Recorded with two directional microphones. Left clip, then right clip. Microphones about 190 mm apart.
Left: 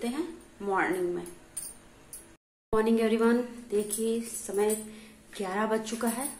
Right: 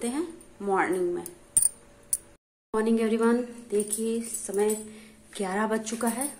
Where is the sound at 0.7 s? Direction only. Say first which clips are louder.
Right 3 dB; 25° right (ahead or behind).